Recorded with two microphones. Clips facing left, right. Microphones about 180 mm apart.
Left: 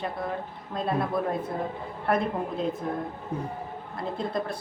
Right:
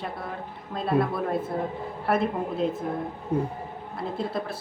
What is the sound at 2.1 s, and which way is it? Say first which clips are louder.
Speech: even; 5° right (ahead or behind).